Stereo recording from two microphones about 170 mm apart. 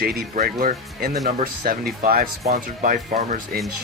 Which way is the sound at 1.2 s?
55° right (ahead or behind).